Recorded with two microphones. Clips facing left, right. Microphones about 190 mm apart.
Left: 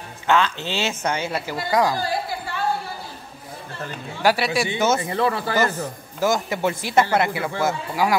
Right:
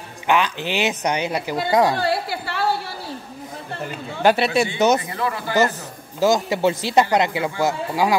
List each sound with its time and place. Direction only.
0.3 s speech: 15° right (ahead or behind)
2.0 s a sound: 70° right (ahead or behind)
3.8 s speech: 20° right (ahead or behind)
5.0 s speech: 30° left (ahead or behind)
6.1 s speech: 20° right (ahead or behind)